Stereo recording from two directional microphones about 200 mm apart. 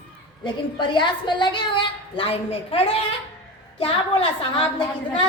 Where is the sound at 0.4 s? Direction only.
20° left (ahead or behind).